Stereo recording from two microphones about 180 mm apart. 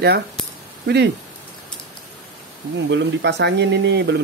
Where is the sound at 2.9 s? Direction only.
80° right.